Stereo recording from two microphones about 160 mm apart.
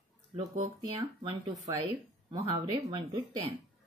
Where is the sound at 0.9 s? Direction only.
30° right (ahead or behind).